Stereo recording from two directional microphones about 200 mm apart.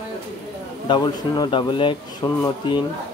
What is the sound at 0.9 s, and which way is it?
Speech, 20° left (ahead or behind).